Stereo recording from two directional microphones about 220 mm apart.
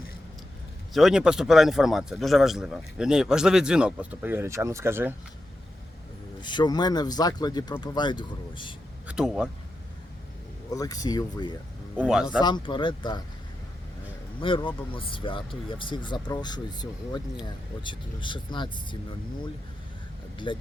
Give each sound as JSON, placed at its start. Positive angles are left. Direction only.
{"t": 0.9, "sound": "a man's voice", "side_deg": 0}
{"t": 6.4, "sound": "speech", "side_deg": 20}
{"t": 9.0, "sound": "speech", "side_deg": -5}
{"t": 10.8, "sound": "speech", "side_deg": 15}
{"t": 11.9, "sound": "a man's voice", "side_deg": -5}
{"t": 12.4, "sound": "speech", "side_deg": 20}
{"t": 14.4, "sound": "speech", "side_deg": 25}
{"t": 20.5, "sound": "speech", "side_deg": 20}